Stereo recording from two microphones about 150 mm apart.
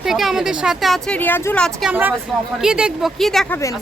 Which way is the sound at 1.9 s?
10° right (ahead or behind).